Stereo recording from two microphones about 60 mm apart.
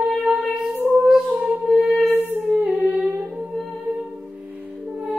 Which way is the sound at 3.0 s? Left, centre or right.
Centre.